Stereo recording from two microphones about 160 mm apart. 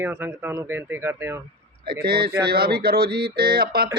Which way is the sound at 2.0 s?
75° right (ahead or behind).